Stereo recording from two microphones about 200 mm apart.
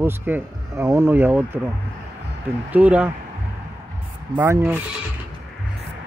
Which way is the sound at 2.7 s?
10° right (ahead or behind).